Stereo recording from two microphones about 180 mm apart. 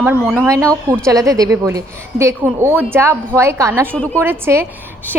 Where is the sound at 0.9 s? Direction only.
15° right (ahead or behind).